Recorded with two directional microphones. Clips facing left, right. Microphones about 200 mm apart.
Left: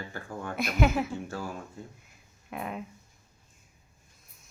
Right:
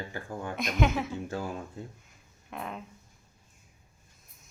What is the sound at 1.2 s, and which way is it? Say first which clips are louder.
Speech: right 2 dB; 20° right (ahead or behind).